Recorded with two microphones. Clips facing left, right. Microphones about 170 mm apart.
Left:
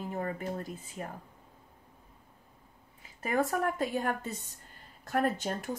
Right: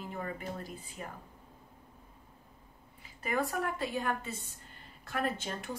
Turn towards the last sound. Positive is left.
turn(degrees=45)  # may be behind; listen again after turning